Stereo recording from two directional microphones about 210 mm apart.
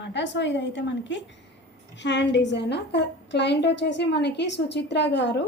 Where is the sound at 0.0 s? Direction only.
55° left (ahead or behind).